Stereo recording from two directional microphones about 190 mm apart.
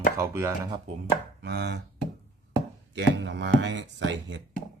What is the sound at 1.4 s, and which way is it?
Chopping, 60° right (ahead or behind).